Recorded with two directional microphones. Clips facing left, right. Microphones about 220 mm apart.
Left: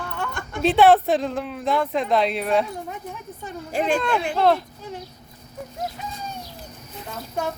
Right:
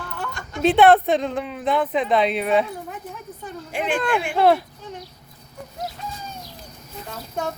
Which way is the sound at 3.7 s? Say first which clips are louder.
Left 3 dB; 40° left (ahead or behind).